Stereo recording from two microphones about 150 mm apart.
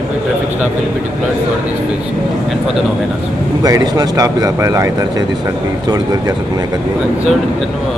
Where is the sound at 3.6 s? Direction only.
25° right (ahead or behind).